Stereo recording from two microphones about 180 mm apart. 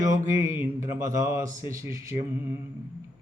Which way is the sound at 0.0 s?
15° right (ahead or behind).